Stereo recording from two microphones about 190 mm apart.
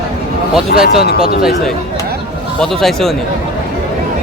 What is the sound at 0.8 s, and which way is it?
Speech, 55° left (ahead or behind).